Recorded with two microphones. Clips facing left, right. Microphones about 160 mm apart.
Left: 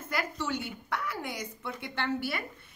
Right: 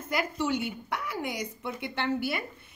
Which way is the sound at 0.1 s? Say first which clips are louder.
Right 4 dB; 15° right (ahead or behind).